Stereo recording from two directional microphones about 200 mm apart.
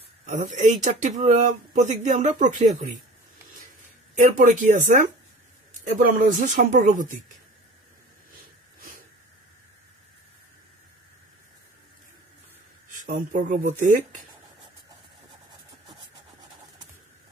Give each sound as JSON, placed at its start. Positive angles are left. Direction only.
{"t": 0.3, "sound": "speech", "side_deg": -40}
{"t": 4.2, "sound": "speech", "side_deg": -40}
{"t": 12.9, "sound": "speech", "side_deg": -40}